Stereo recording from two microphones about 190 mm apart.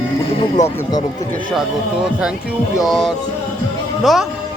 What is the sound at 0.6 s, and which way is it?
Speech, 20° left (ahead or behind).